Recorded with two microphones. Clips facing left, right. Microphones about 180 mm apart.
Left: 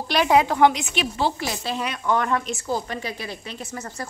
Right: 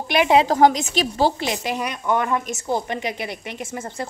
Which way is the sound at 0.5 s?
40° right (ahead or behind).